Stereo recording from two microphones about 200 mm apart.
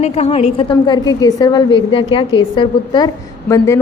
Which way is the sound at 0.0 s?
30° left (ahead or behind).